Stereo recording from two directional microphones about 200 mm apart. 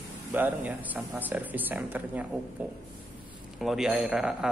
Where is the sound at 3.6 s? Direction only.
Centre (ahead or behind).